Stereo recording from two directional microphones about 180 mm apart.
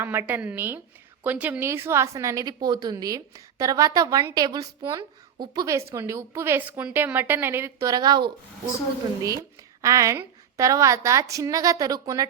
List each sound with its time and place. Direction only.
0.0 s a woman's voice: 10° right (ahead or behind)
9.8 s a woman's voice: 15° right (ahead or behind)